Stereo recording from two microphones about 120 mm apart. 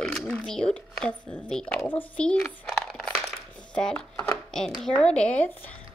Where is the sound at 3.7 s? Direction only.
5° left (ahead or behind).